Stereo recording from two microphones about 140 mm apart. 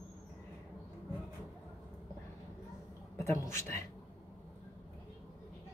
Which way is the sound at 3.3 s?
20° left (ahead or behind).